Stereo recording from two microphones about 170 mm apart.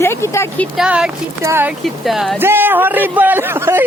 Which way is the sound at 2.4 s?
10° right (ahead or behind).